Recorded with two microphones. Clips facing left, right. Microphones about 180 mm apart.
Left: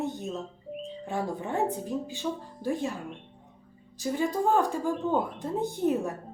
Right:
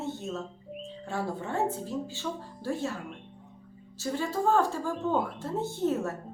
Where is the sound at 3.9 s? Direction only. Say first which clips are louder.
Left 3 dB; 15° left (ahead or behind).